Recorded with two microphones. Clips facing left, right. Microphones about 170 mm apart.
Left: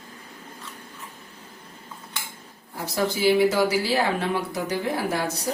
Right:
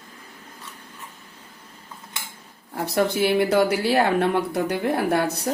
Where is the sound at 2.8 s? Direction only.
60° right (ahead or behind).